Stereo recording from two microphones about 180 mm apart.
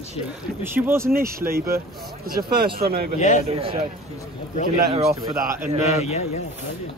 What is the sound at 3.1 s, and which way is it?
Speech, 40° left (ahead or behind).